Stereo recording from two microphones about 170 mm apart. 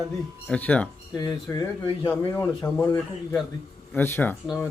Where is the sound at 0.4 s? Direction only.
10° left (ahead or behind).